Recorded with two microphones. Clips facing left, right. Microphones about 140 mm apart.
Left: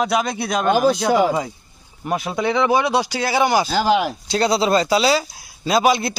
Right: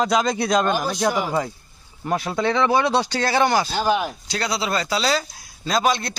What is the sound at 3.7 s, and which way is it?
Speech, 90° left.